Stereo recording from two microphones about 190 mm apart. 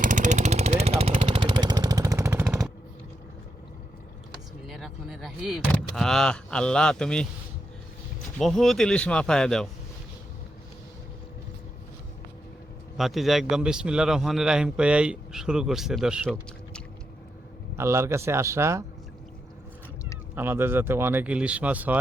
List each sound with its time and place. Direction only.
0.0 s vehicle: 40° right (ahead or behind); by 2.7 s 5° right (ahead or behind)
4.6 s speech: centre (ahead or behind)
8.4 s a man's voice: centre (ahead or behind)
13.0 s a man's voice: centre (ahead or behind)
17.7 s speech: 15° right (ahead or behind)
20.3 s speech: 10° right (ahead or behind)